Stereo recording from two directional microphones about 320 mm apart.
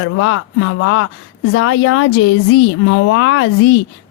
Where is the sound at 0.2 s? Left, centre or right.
Left.